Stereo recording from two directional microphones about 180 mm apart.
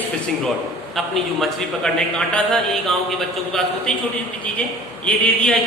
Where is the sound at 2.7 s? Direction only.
Centre (ahead or behind).